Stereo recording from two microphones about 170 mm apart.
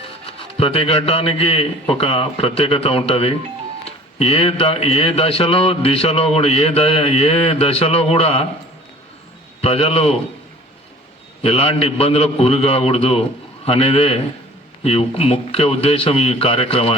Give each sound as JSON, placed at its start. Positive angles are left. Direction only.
{"t": 0.0, "sound": "speech", "side_deg": 30}
{"t": 9.6, "sound": "speech", "side_deg": 35}
{"t": 11.4, "sound": "speech", "side_deg": 35}